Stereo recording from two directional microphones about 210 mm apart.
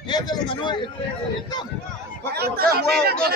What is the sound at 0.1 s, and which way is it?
Speech, 20° left (ahead or behind).